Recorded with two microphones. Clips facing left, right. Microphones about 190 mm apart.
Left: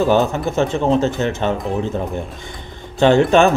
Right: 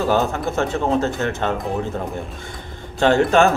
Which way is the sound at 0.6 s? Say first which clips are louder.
Left 4 dB; 20° left (ahead or behind).